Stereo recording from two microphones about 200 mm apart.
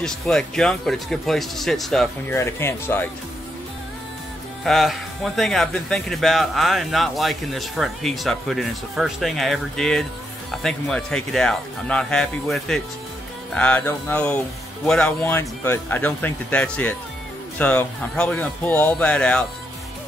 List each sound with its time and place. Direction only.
0.0 s speech: 5° left (ahead or behind)
2.3 s speech: 10° left (ahead or behind)
4.6 s speech: centre (ahead or behind)